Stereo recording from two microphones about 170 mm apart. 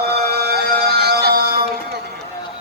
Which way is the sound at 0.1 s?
70° right (ahead or behind).